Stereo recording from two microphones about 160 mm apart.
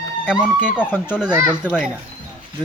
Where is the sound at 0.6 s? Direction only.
10° left (ahead or behind).